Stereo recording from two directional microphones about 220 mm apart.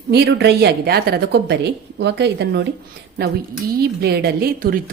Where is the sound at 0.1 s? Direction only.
50° right (ahead or behind).